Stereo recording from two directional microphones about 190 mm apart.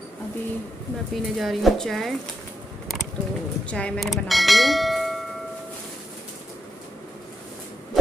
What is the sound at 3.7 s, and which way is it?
Speech, 5° left (ahead or behind).